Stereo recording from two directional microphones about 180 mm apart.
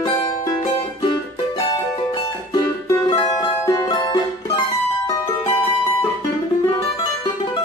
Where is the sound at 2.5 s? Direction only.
25° left (ahead or behind).